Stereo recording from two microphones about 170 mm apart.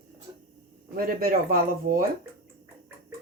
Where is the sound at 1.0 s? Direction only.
60° right (ahead or behind).